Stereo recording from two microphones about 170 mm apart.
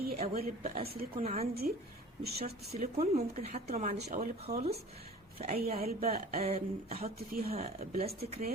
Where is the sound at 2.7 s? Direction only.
40° right (ahead or behind).